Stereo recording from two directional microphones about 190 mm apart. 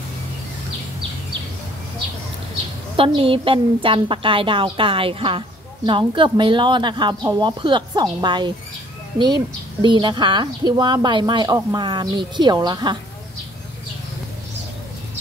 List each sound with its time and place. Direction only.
3.2 s a woman's voice: 30° right (ahead or behind)